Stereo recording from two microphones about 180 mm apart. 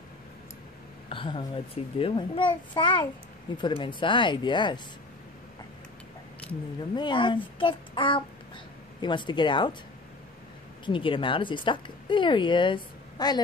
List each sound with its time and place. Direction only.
1.0 s a woman's voice: 30° left (ahead or behind)
7.0 s a woman's voice: 25° left (ahead or behind)
10.9 s a woman's voice: 30° left (ahead or behind)